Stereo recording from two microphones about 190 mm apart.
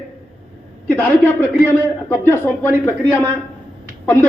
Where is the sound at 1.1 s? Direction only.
10° left (ahead or behind).